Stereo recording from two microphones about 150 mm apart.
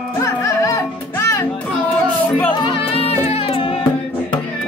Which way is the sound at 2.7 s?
40° left (ahead or behind).